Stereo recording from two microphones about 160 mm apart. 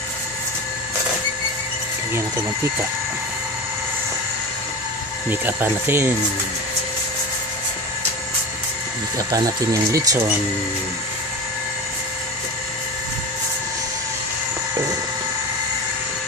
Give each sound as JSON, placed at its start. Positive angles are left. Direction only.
{"t": 5.3, "sound": "speech", "side_deg": -10}
{"t": 9.3, "sound": "speech", "side_deg": -25}